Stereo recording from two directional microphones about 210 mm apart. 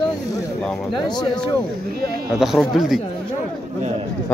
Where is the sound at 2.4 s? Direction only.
Centre (ahead or behind).